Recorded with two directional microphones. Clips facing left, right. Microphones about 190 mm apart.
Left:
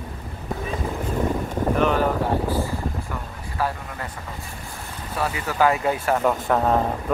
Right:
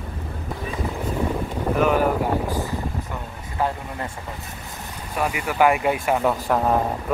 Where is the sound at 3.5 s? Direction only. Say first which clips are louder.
Right 2 dB; 20° right (ahead or behind).